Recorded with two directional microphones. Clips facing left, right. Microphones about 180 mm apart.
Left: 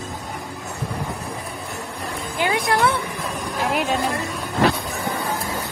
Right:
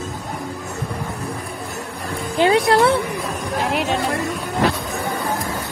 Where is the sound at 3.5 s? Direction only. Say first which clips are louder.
Right 1 dB; centre (ahead or behind).